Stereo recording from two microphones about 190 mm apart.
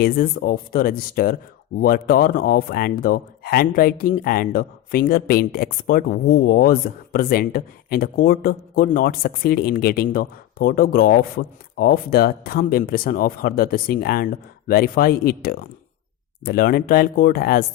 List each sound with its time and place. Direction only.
0.0 s speech: 50° left (ahead or behind)